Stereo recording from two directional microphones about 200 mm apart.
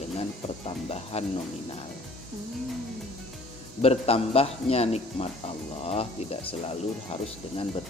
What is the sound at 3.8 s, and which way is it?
A man's voice, 30° left (ahead or behind).